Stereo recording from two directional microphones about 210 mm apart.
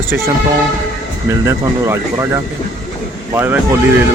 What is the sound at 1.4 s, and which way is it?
Speech, 15° right (ahead or behind).